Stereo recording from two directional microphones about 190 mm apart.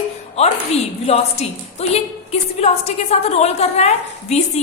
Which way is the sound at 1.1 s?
35° left (ahead or behind).